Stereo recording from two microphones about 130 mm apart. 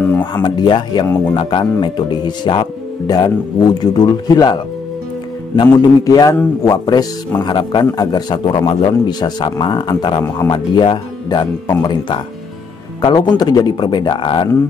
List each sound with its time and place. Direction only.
0.2 s a man's voice: 35° left (ahead or behind)
1.0 s speech: 20° left (ahead or behind)
1.3 s a man's voice: 35° left (ahead or behind)
5.6 s a man's voice: 35° left (ahead or behind)